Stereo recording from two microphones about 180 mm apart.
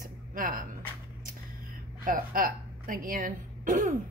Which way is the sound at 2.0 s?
50° right (ahead or behind).